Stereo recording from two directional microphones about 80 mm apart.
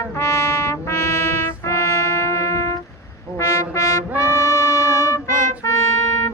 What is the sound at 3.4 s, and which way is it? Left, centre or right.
Brass instrument, left.